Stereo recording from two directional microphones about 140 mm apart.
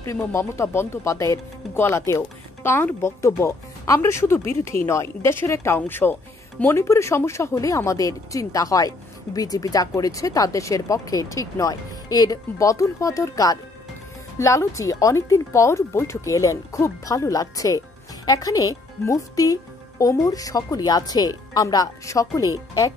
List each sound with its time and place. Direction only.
0.0 s speech: 20° left (ahead or behind)